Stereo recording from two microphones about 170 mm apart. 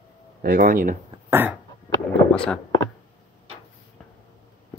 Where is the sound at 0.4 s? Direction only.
55° right (ahead or behind).